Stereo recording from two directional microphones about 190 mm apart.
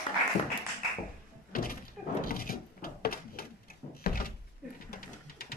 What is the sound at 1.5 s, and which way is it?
Door, 50° left (ahead or behind).